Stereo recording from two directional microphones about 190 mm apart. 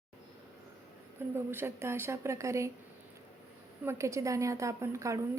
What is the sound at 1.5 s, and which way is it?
A woman's voice, 10° right (ahead or behind).